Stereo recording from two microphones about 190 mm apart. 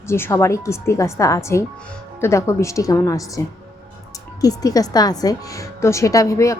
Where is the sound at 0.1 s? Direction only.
15° left (ahead or behind).